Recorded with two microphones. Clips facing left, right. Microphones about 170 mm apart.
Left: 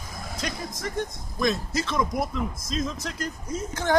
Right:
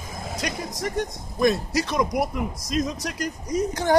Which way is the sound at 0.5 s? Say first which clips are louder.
Right 4 dB; 15° right (ahead or behind).